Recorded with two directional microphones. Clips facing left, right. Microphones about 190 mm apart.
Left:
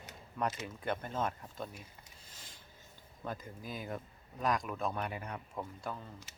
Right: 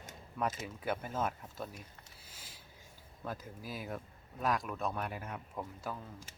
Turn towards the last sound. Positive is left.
turn(degrees=-5)  # may be behind; listen again after turning